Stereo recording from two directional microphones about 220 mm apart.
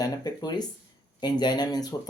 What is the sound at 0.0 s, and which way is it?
Speech, 20° left (ahead or behind).